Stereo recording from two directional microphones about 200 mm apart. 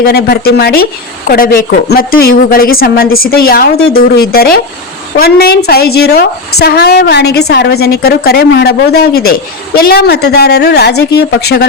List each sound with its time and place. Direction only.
0.0 s a woman's voice: 50° left (ahead or behind)